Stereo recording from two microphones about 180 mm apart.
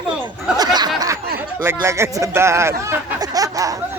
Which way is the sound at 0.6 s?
25° right (ahead or behind).